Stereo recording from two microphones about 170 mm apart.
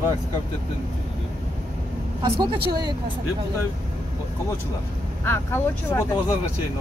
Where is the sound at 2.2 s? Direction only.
25° right (ahead or behind).